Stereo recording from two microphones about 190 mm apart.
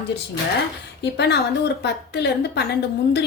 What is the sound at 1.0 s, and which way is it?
A woman's voice, 60° left (ahead or behind).